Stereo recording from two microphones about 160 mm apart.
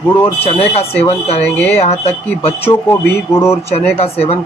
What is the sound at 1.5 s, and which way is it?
Speech, 10° left (ahead or behind).